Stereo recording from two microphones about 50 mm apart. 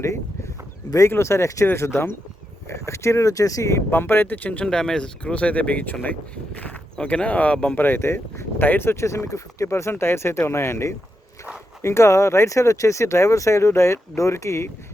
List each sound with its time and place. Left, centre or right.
1.1 s speech: left
1.6 s speech: left
2.6 s speech: left
3.9 s speech: left
4.6 s speech: centre; by 6.1 s left
6.9 s speech: left
7.8 s speech: left
8.6 s speech: left
8.9 s speech: left